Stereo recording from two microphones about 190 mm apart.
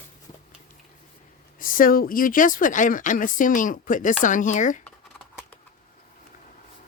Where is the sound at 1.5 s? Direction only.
45° left (ahead or behind).